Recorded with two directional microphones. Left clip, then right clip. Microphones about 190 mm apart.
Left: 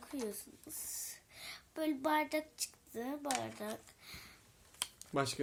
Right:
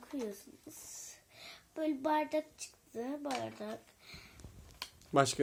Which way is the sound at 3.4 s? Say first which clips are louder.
Right 1 dB; 45° left (ahead or behind).